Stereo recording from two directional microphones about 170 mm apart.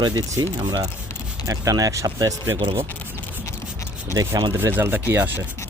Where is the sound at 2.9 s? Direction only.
10° left (ahead or behind).